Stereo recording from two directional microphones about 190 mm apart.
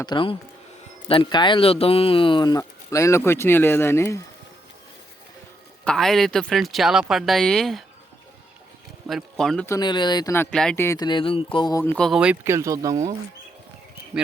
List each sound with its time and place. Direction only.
0.0 s speech: 25° left (ahead or behind)
5.8 s speech: 5° left (ahead or behind)
9.0 s speech: centre (ahead or behind)
9.6 s speech: 20° left (ahead or behind)
10.3 s speech: 5° left (ahead or behind)
11.9 s speech: centre (ahead or behind); by 13.0 s 15° right (ahead or behind)